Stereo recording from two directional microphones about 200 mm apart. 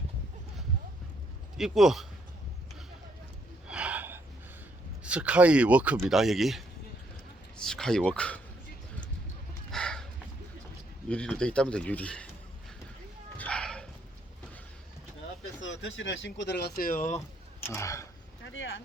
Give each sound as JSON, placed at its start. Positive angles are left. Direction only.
{"t": 1.5, "sound": "speech", "side_deg": 0}
{"t": 3.7, "sound": "gasp", "side_deg": -5}
{"t": 5.0, "sound": "speech", "side_deg": -5}
{"t": 9.7, "sound": "horse", "side_deg": 5}
{"t": 11.1, "sound": "speech", "side_deg": 5}
{"t": 13.3, "sound": "a sound", "side_deg": 5}
{"t": 15.6, "sound": "speech", "side_deg": 70}
{"t": 17.7, "sound": "speech", "side_deg": 15}
{"t": 18.4, "sound": "speech", "side_deg": 65}